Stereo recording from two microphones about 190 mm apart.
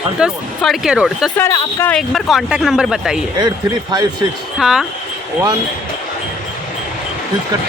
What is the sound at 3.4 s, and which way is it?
Speech, 20° right (ahead or behind).